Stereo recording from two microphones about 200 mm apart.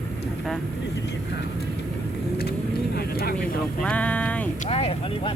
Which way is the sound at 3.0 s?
50° left (ahead or behind).